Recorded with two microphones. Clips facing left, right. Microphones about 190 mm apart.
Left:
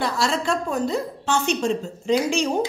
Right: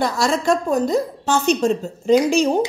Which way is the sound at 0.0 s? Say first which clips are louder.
Right 4 dB; 45° right (ahead or behind).